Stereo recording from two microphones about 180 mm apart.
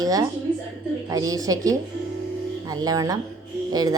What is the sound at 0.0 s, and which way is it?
A woman's voice, 20° right (ahead or behind).